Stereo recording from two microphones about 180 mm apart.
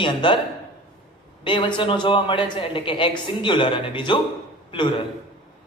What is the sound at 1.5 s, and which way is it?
Speech, 25° left (ahead or behind).